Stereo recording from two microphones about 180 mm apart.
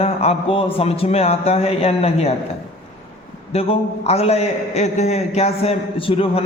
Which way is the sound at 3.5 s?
30° left (ahead or behind).